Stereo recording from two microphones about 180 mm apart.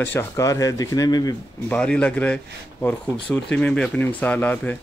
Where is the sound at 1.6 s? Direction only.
5° left (ahead or behind).